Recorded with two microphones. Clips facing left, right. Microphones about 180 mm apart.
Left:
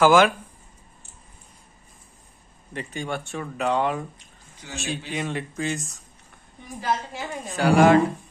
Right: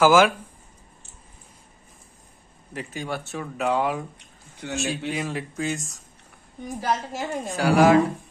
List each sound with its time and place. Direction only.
0.0 s speech: 5° right (ahead or behind)
2.7 s speech: 5° right (ahead or behind)
4.2 s bathtub: 65° right (ahead or behind)
4.7 s speech: centre (ahead or behind)
6.8 s a woman's voice: 40° right (ahead or behind)
7.4 s speech: centre (ahead or behind)